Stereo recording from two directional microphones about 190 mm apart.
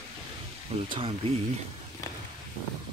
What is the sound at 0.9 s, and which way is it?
Speech, 30° right (ahead or behind).